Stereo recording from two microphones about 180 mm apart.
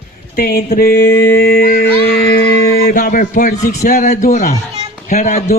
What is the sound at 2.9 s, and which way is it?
Music, 50° left (ahead or behind).